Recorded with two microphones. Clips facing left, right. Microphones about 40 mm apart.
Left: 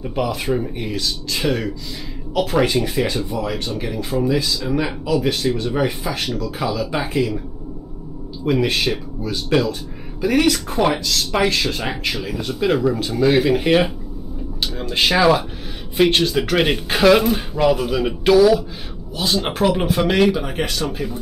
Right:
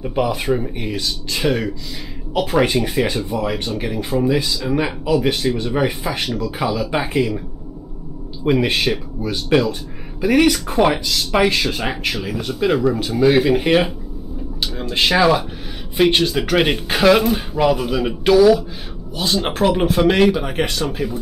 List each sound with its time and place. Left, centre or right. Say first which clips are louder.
0.0 s speech: right 2 dB; centre
8.5 s speech: right 2 dB; centre